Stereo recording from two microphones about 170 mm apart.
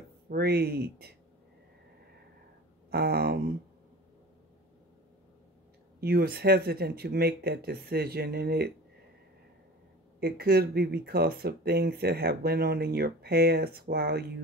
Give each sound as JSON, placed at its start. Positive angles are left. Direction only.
{"t": 0.3, "sound": "speech", "side_deg": -70}
{"t": 2.9, "sound": "speech", "side_deg": -70}
{"t": 5.9, "sound": "speech", "side_deg": -65}
{"t": 10.2, "sound": "speech", "side_deg": -70}